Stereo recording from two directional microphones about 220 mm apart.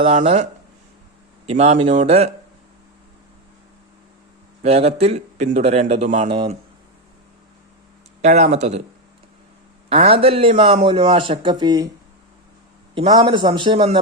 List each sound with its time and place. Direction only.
0.0 s speech: 30° right (ahead or behind)
1.5 s speech: 30° right (ahead or behind)
4.6 s speech: 30° right (ahead or behind)
8.2 s speech: 30° right (ahead or behind)
9.9 s speech: 25° right (ahead or behind)
12.9 s speech: 25° right (ahead or behind)